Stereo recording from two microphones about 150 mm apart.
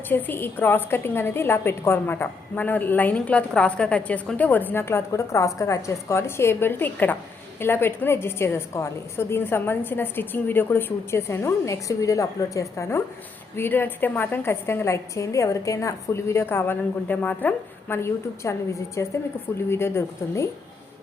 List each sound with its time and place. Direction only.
0.1 s a woman's voice: 15° left (ahead or behind)